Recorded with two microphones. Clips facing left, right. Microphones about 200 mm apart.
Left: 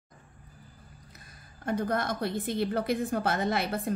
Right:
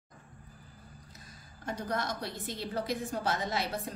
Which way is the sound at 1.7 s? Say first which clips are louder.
Left 6 dB; 55° left (ahead or behind).